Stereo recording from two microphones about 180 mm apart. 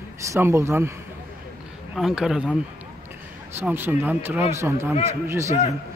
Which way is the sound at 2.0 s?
Centre (ahead or behind).